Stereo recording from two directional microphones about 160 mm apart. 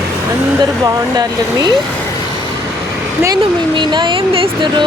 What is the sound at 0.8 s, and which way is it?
Speech, 25° right (ahead or behind).